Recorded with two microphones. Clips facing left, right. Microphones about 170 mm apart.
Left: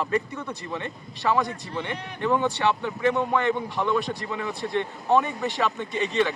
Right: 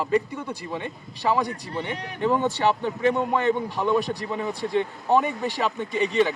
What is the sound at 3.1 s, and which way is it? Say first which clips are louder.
A man's voice: right 1 dB; 15° right (ahead or behind).